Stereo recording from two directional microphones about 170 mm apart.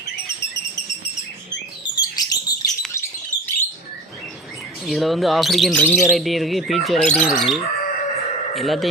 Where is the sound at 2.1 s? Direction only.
20° left (ahead or behind).